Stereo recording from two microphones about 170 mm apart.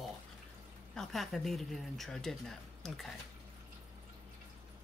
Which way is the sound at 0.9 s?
Centre (ahead or behind).